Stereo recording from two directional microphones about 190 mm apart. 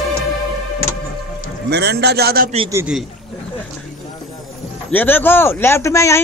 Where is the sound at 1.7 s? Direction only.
60° right (ahead or behind).